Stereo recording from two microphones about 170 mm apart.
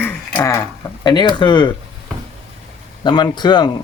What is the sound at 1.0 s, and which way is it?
Speech, 25° left (ahead or behind).